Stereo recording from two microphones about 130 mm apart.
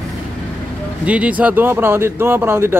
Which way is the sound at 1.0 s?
10° right (ahead or behind).